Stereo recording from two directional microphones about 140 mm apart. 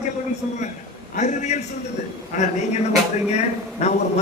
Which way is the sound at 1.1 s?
55° left (ahead or behind).